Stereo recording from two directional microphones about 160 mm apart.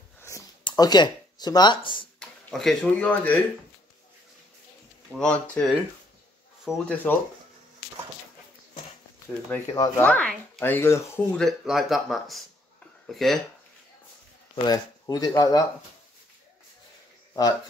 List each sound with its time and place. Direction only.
0.3 s a sound: 20° left (ahead or behind)
0.7 s speech: 25° left (ahead or behind)
2.1 s speech: centre (ahead or behind)
5.2 s speech: 5° left (ahead or behind)
6.9 s speech: 10° left (ahead or behind)
9.7 s speech: 15° left (ahead or behind)
11.4 s speech: centre (ahead or behind)
14.5 s speech: 25° left (ahead or behind)